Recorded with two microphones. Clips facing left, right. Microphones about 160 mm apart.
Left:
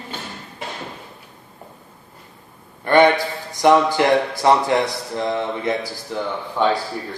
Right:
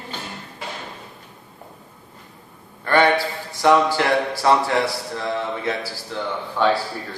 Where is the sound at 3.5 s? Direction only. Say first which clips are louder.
Left 2 dB; 20° left (ahead or behind).